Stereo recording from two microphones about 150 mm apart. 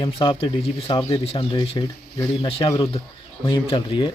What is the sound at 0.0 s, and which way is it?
A man's voice, 35° left (ahead or behind).